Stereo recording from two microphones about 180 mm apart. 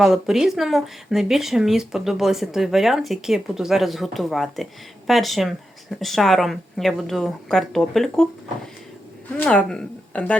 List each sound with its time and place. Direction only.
0.0 s speech: 5° right (ahead or behind)
9.4 s speech: 5° left (ahead or behind)